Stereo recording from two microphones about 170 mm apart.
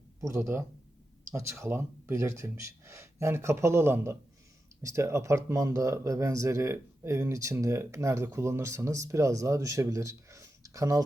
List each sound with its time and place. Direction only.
0.2 s speech: 15° right (ahead or behind)